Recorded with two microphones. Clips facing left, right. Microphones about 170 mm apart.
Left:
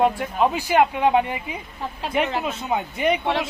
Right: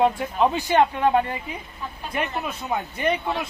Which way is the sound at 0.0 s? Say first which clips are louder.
Even; 5° left (ahead or behind).